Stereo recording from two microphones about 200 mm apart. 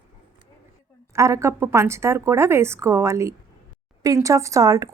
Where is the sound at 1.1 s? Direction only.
15° right (ahead or behind).